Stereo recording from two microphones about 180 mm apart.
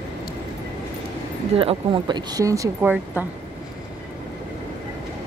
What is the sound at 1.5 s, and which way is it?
Speech, 30° right (ahead or behind).